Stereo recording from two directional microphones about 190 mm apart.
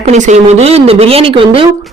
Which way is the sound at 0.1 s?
35° right (ahead or behind).